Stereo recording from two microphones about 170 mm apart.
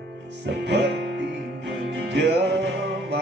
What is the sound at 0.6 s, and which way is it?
Music, 90° right.